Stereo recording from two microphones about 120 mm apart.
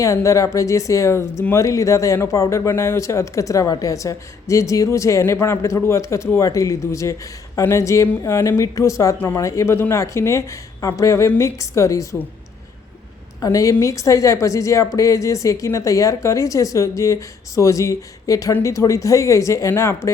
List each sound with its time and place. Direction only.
0.0 s speech: 25° left (ahead or behind)
13.4 s speech: 30° left (ahead or behind)